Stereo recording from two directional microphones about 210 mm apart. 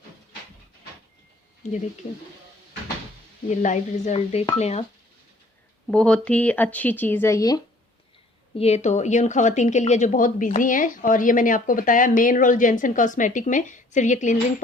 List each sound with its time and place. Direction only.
1.6 s speech: 35° left (ahead or behind)
3.5 s speech: 35° left (ahead or behind)
5.9 s speech: 5° left (ahead or behind)
8.5 s speech: 30° left (ahead or behind)